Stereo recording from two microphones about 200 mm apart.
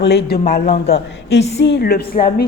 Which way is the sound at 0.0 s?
55° left (ahead or behind).